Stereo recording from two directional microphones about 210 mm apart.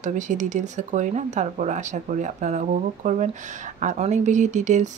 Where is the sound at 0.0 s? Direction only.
35° right (ahead or behind).